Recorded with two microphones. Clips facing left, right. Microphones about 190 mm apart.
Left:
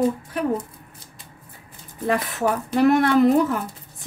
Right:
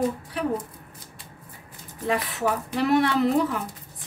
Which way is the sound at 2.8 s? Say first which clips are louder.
Left 6 dB; 50° left (ahead or behind).